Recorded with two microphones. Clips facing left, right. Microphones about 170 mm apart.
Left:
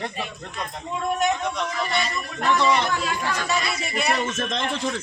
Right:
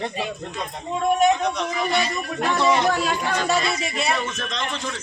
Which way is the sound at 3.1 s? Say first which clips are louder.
Right 3 dB; 30° right (ahead or behind).